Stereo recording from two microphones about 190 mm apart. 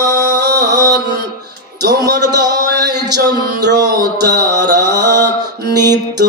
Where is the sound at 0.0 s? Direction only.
20° right (ahead or behind).